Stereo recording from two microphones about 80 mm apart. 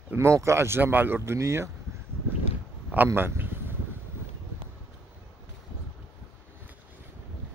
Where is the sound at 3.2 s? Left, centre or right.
Right.